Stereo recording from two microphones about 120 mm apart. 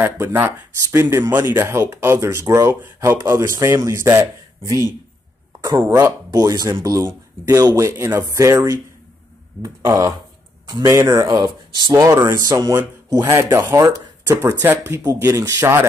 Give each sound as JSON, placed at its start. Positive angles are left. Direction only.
{"t": 0.0, "sound": "speech", "side_deg": -20}